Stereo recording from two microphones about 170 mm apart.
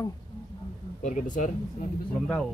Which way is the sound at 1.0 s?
45° left (ahead or behind).